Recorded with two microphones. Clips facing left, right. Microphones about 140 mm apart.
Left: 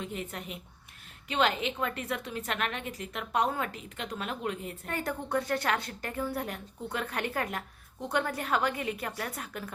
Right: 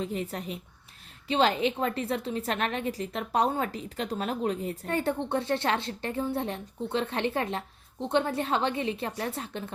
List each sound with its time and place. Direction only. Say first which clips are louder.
0.0 s a woman's voice: right 5 dB; 35° right (ahead or behind)